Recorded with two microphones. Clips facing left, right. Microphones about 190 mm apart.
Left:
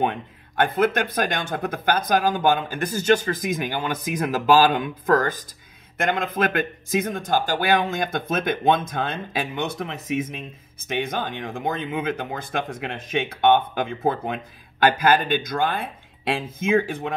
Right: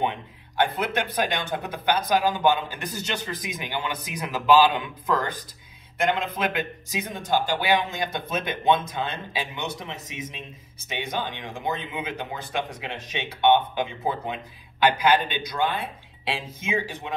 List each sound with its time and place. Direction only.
0.0 s speech: 50° left (ahead or behind)